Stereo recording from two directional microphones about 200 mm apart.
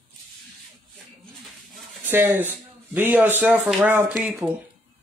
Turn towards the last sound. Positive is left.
turn(degrees=-10)  # may be behind; listen again after turning